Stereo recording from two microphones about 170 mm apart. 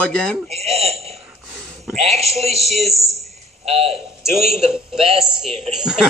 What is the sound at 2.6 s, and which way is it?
Speech, centre (ahead or behind).